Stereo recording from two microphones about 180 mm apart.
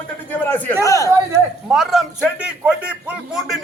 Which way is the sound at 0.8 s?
20° left (ahead or behind).